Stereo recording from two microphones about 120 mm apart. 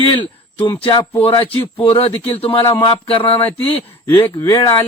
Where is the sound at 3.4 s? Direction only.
15° left (ahead or behind).